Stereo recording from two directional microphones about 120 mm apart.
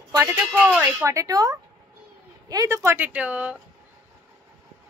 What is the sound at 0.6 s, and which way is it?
Speech, 15° right (ahead or behind).